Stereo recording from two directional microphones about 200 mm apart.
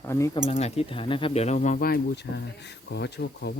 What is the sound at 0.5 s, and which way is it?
Speech, 30° left (ahead or behind).